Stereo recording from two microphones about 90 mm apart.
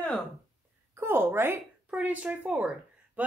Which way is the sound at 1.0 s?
25° right (ahead or behind).